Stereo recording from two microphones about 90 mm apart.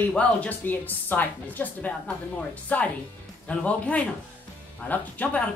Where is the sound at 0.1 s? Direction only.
15° left (ahead or behind).